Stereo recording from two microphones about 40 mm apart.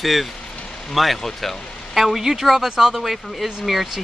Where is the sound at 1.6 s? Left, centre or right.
Left.